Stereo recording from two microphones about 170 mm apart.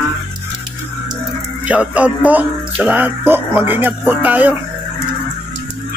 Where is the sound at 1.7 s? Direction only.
10° right (ahead or behind).